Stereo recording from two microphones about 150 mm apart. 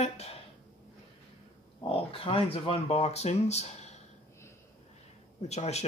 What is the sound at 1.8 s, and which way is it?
Speech, 40° left (ahead or behind).